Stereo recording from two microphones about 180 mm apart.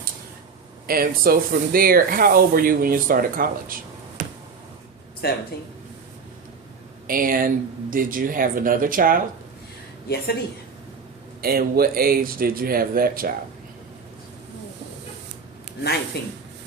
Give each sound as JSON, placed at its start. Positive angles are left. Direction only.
{"t": 0.9, "sound": "speech", "side_deg": -55}
{"t": 4.2, "sound": "a sound", "side_deg": -45}
{"t": 5.2, "sound": "speech", "side_deg": 60}
{"t": 7.1, "sound": "speech", "side_deg": -50}
{"t": 11.3, "sound": "speech", "side_deg": -55}
{"t": 16.1, "sound": "speech", "side_deg": 65}